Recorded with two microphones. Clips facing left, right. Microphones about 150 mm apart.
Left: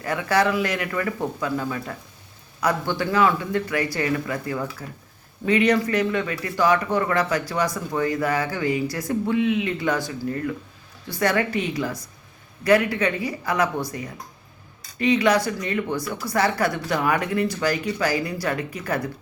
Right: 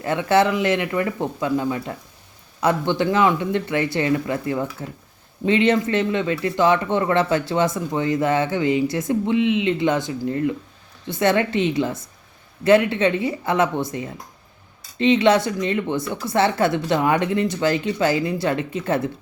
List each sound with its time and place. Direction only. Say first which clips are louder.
0.0 s speech: right 4 dB; 25° right (ahead or behind)